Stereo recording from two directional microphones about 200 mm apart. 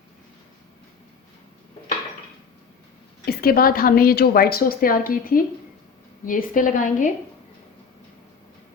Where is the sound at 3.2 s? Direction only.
50° left (ahead or behind).